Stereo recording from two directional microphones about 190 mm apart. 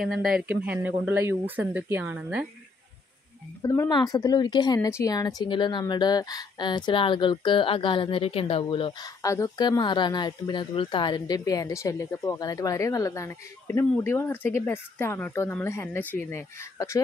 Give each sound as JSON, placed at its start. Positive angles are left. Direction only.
{"t": 0.0, "sound": "speech", "side_deg": 0}
{"t": 3.6, "sound": "speech", "side_deg": 15}